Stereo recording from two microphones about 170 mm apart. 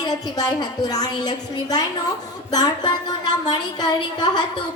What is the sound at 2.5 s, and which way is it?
A woman's voice, 25° left (ahead or behind).